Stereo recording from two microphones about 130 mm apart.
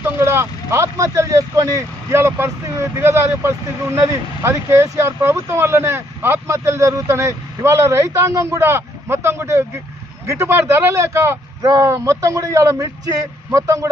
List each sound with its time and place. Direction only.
0.0 s speech: 20° right (ahead or behind)